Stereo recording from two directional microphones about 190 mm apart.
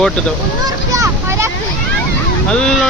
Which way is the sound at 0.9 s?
15° right (ahead or behind).